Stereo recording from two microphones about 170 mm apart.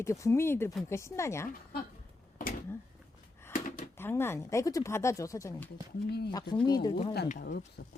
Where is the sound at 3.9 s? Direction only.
15° left (ahead or behind).